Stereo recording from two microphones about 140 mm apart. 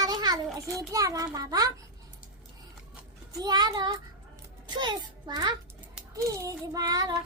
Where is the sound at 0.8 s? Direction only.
25° right (ahead or behind).